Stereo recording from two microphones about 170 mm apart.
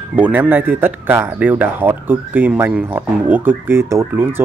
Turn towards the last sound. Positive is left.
turn(degrees=-15)  # may be behind; listen again after turning